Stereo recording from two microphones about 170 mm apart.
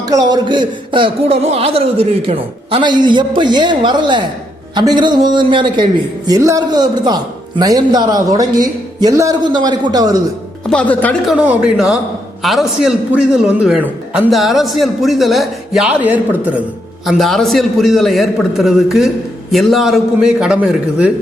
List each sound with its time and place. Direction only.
0.1 s a man's voice: 20° right (ahead or behind)
10.7 s speech: 5° left (ahead or behind)
11.3 s a man's voice: 5° right (ahead or behind)